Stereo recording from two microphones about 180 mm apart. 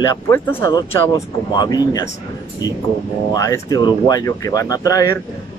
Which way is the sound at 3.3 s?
20° left (ahead or behind).